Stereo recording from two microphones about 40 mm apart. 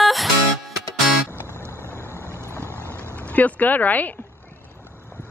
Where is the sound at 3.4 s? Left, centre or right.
Left.